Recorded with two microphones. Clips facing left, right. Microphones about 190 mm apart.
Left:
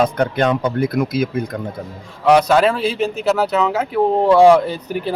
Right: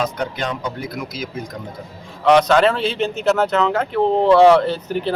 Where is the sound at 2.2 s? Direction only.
10° left (ahead or behind).